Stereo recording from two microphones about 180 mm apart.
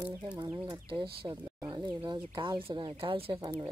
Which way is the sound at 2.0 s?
25° right (ahead or behind).